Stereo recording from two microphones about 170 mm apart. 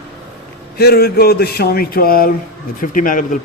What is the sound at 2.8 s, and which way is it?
Speech, 50° left (ahead or behind).